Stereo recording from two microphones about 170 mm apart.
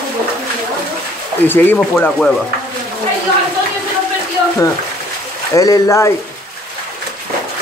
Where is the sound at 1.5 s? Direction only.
10° left (ahead or behind).